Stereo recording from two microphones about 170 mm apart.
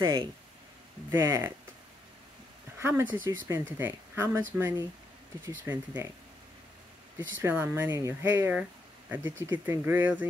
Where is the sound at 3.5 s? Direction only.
15° right (ahead or behind).